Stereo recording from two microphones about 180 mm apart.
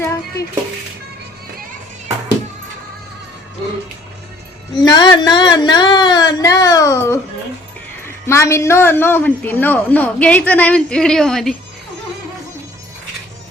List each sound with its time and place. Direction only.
0.0 s music: 15° left (ahead or behind)
4.8 s a sound: 25° left (ahead or behind)
8.0 s a woman's voice: 15° left (ahead or behind)